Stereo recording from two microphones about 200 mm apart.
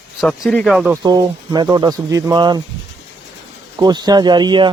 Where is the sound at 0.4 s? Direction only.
Centre (ahead or behind).